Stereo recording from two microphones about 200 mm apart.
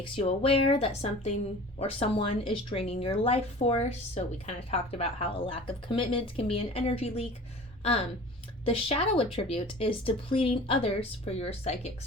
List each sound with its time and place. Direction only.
0.0 s speech: 30° left (ahead or behind)
8.6 s speech: 30° left (ahead or behind)